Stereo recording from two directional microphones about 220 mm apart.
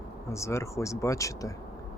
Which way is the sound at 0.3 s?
15° left (ahead or behind).